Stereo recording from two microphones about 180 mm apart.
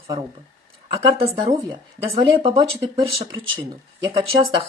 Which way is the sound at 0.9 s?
35° right (ahead or behind).